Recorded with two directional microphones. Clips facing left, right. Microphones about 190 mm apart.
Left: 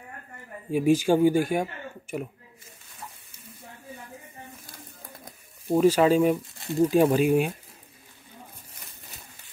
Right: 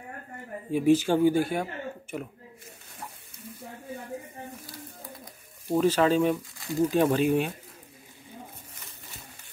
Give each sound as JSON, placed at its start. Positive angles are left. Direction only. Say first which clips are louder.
{"t": 0.7, "sound": "speech", "louder": "left 1 dB", "side_deg": 10}
{"t": 5.7, "sound": "speech", "louder": "left 3 dB", "side_deg": 10}